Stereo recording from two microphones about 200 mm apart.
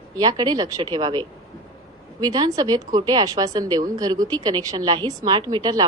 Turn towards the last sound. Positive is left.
turn(degrees=-20)  # may be behind; listen again after turning